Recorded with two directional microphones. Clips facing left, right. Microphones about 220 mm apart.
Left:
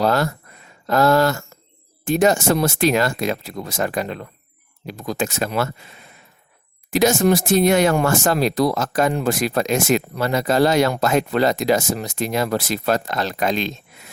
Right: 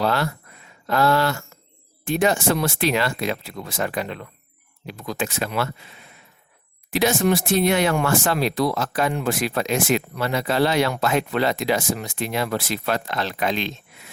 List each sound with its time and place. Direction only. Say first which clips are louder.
0.0 s speech: left 4 dB; 40° left (ahead or behind)